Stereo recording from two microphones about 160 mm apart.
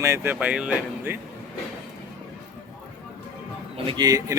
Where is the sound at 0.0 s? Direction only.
15° right (ahead or behind).